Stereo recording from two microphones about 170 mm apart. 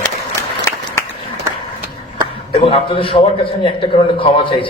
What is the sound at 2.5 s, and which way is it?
Speech, 30° left (ahead or behind).